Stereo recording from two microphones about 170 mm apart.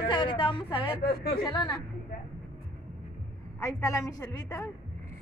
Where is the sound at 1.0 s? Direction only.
60° left (ahead or behind).